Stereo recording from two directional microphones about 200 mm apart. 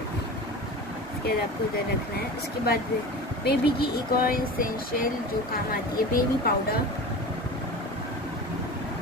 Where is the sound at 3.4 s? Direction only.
50° left (ahead or behind).